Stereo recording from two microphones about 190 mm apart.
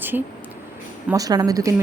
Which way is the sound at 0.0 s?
10° right (ahead or behind).